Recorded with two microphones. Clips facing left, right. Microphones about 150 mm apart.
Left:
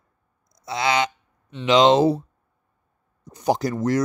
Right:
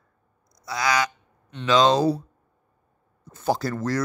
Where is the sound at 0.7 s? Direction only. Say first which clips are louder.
Left 2 dB; 25° left (ahead or behind).